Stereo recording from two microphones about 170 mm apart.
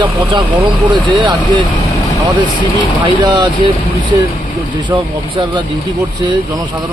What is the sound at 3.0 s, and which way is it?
Speech, 25° right (ahead or behind).